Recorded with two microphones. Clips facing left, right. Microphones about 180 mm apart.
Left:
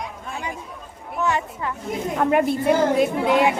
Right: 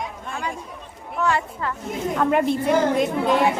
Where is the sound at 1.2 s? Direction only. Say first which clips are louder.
Right 1 dB; 20° left (ahead or behind).